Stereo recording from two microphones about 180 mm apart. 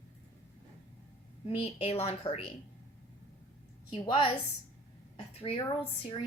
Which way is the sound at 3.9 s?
30° left (ahead or behind).